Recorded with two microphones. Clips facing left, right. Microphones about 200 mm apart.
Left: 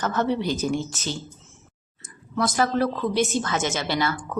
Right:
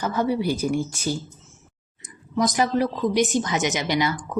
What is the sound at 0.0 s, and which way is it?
A woman's voice, 10° right (ahead or behind).